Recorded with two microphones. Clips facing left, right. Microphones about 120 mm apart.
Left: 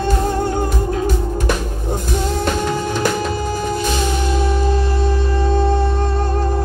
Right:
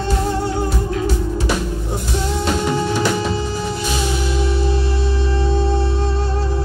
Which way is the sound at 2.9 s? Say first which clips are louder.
Even; 50° left (ahead or behind).